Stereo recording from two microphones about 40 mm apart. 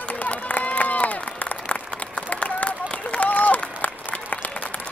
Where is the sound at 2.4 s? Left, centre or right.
Left.